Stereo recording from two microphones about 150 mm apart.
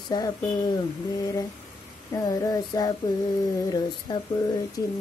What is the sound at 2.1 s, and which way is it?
Speech, 20° left (ahead or behind).